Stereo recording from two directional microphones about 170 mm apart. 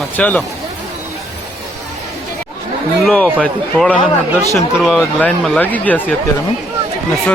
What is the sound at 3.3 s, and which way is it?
A man's voice, 10° left (ahead or behind).